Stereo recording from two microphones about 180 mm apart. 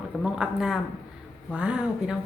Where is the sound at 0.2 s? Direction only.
5° right (ahead or behind).